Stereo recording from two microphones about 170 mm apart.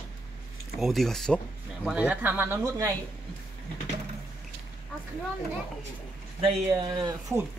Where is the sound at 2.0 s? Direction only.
10° right (ahead or behind).